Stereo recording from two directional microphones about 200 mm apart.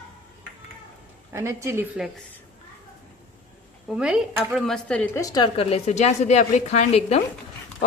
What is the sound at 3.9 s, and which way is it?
A woman's voice, 5° right (ahead or behind).